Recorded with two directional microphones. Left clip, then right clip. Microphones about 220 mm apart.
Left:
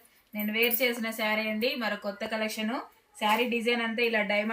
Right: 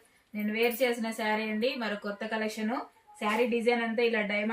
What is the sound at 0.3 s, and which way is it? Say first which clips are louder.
Speech: left 1 dB; 15° right (ahead or behind).